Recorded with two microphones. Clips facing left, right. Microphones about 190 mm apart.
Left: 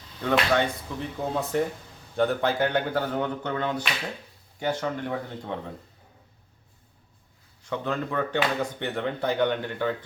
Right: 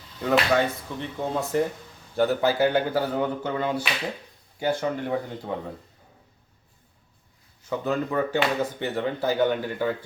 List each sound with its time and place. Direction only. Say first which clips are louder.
0.2 s speech: right 2 dB; 5° right (ahead or behind)
7.6 s speech: right 3 dB; 5° right (ahead or behind)